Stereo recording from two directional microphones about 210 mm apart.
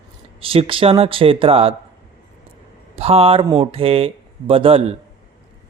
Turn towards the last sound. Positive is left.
turn(degrees=-25)  # may be behind; listen again after turning